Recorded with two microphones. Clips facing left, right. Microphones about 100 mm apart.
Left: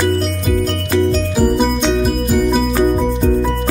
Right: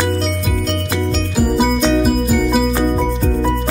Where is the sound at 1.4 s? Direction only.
5° right (ahead or behind).